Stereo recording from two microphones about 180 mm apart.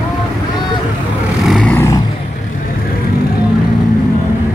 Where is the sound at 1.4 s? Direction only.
Centre (ahead or behind).